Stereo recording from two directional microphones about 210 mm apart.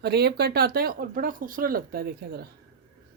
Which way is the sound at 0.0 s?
50° right (ahead or behind).